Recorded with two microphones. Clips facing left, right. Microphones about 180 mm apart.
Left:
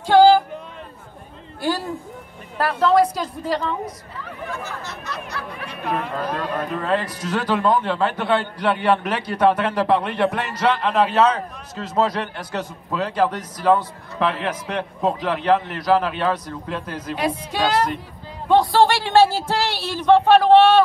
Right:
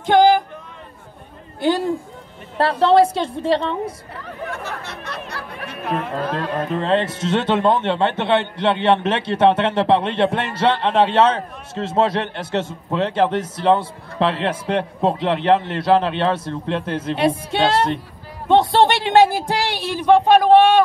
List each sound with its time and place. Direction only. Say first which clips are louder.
0.0 s a sound: left 1 dB; 20° right (ahead or behind)
1.6 s speech: right 5 dB; 20° right (ahead or behind)
4.6 s speech: right 2 dB; 60° right (ahead or behind)
6.3 s speech: right 3 dB; 25° right (ahead or behind)